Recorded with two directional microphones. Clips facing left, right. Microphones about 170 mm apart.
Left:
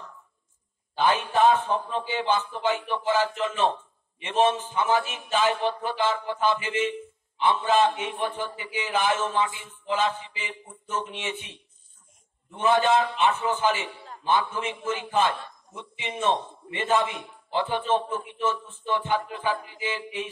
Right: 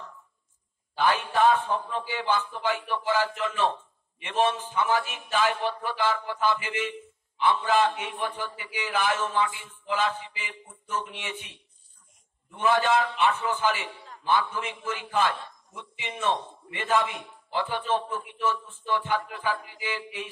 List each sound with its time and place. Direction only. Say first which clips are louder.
0.9 s a man's voice: left 2 dB; 20° left (ahead or behind)